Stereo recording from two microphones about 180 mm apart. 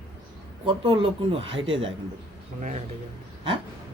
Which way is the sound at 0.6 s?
30° right (ahead or behind).